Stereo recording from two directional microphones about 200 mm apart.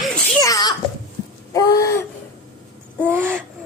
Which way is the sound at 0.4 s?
15° left (ahead or behind).